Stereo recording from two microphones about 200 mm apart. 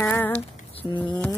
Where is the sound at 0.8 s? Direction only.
25° left (ahead or behind).